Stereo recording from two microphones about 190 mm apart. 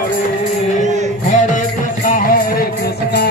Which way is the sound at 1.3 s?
40° left (ahead or behind).